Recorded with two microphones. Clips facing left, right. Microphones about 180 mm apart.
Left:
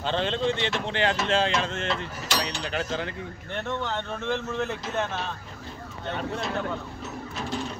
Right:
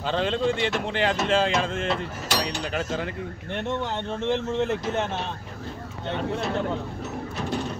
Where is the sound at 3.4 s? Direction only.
15° right (ahead or behind).